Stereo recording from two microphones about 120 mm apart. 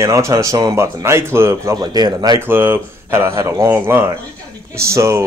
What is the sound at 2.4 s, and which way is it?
Speech, 20° right (ahead or behind).